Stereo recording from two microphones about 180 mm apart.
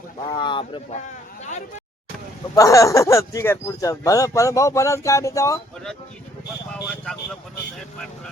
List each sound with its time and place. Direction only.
0.2 s speech: 25° left (ahead or behind)
2.6 s speech: 15° left (ahead or behind)
6.8 s speech: centre (ahead or behind)